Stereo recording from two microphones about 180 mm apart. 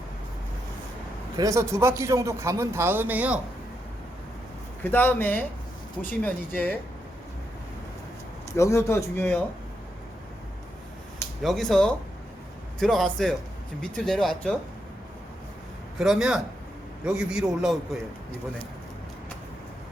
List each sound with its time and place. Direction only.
1.4 s a man's voice: 15° right (ahead or behind)
4.8 s speech: 10° left (ahead or behind)
8.5 s speech: 15° left (ahead or behind)
11.4 s speech: centre (ahead or behind)
16.0 s speech: 5° right (ahead or behind)